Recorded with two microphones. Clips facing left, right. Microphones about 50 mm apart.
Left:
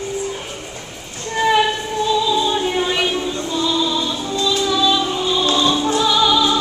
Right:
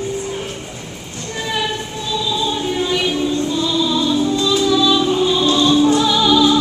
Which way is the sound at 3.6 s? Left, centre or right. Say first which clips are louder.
Left 2 dB; centre.